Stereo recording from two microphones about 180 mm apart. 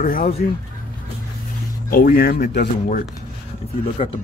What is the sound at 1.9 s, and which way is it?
Speech, 55° left (ahead or behind).